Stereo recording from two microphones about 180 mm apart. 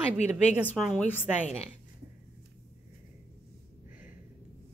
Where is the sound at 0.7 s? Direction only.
Centre (ahead or behind).